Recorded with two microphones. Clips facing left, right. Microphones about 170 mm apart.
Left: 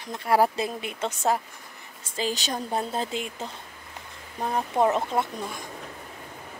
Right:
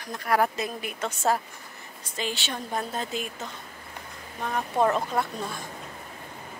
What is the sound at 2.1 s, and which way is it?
A woman's voice, 35° left (ahead or behind).